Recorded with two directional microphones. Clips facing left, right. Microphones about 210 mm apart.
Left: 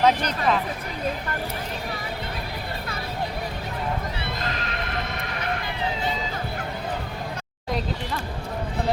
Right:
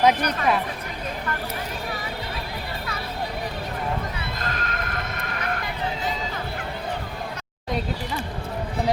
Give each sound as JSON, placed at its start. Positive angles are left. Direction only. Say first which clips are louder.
{"t": 0.0, "sound": "a woman's voice", "louder": "right 1 dB", "side_deg": -10}
{"t": 4.4, "sound": "neigh", "louder": "even", "side_deg": -45}